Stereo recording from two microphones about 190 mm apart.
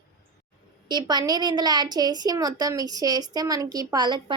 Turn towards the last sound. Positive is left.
turn(degrees=-25)  # may be behind; listen again after turning